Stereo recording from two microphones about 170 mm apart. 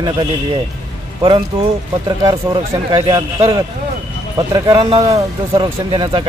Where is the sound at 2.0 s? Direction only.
25° right (ahead or behind).